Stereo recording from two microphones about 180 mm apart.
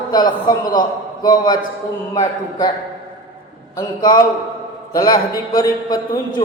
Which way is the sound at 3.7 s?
20° left (ahead or behind).